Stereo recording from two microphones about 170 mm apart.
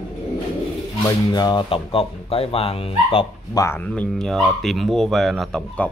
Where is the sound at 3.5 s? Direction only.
20° left (ahead or behind).